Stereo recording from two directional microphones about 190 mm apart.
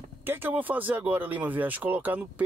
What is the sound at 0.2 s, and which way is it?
Speech, 10° right (ahead or behind).